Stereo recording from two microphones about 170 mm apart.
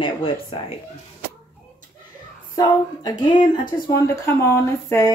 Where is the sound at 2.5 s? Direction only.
20° left (ahead or behind).